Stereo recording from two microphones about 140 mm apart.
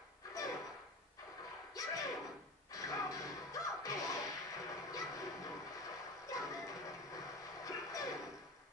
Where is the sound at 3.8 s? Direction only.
25° left (ahead or behind).